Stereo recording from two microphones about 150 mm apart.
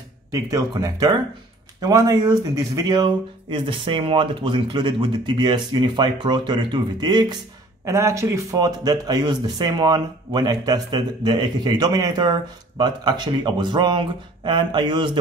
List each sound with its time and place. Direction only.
0.3 s speech: 25° right (ahead or behind)